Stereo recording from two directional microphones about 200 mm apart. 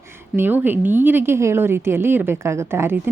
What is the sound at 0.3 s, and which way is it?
A woman's voice, 10° right (ahead or behind).